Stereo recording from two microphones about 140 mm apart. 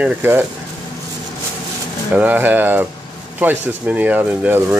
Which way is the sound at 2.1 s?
10° right (ahead or behind).